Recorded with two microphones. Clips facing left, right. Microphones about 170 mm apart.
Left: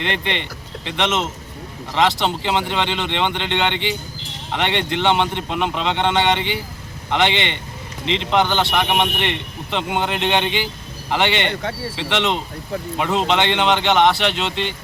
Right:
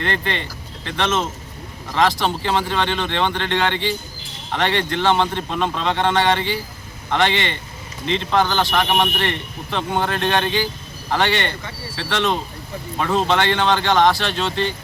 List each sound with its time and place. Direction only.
0.0 s a man's voice: 20° left (ahead or behind)